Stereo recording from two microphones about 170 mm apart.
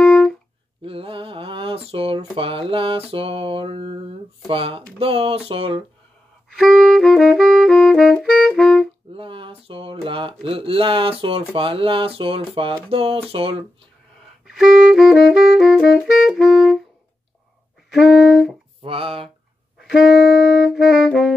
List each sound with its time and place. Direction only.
0.0 s music: 5° left (ahead or behind)
0.8 s mantra: 35° right (ahead or behind)
2.3 s speech: 30° right (ahead or behind)
6.6 s saxophone: centre (ahead or behind)
9.1 s speech: 30° right (ahead or behind)
14.5 s saxophone: centre (ahead or behind)
17.9 s saxophone: centre (ahead or behind)
18.8 s speech: 30° right (ahead or behind)
19.8 s saxophone: 5° right (ahead or behind)